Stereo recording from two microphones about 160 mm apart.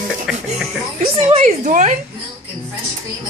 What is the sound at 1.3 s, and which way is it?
Speech, 45° right (ahead or behind).